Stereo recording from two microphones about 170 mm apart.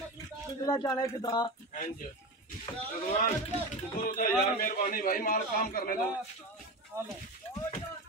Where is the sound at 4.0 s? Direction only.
50° left (ahead or behind).